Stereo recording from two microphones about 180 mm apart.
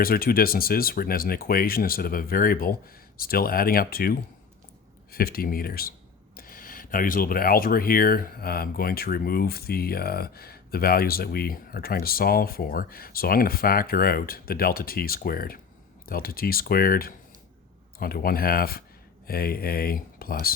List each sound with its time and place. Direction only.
0.0 s speech: 55° left (ahead or behind)